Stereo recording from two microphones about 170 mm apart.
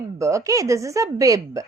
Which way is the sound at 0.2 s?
20° right (ahead or behind).